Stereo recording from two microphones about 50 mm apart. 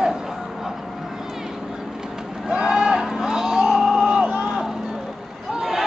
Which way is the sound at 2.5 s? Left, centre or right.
Centre.